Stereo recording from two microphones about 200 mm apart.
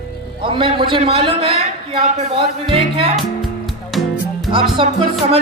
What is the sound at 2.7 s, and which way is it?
Music, 25° right (ahead or behind).